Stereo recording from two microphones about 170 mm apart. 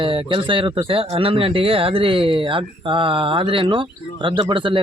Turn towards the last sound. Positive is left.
turn(degrees=-30)  # may be behind; listen again after turning